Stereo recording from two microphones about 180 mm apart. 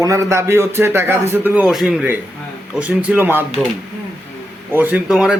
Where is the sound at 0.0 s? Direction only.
15° right (ahead or behind).